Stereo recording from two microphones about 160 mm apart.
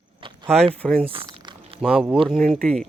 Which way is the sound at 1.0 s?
35° right (ahead or behind).